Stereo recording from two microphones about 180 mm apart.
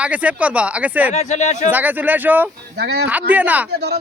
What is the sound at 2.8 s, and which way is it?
Speech, 65° right (ahead or behind).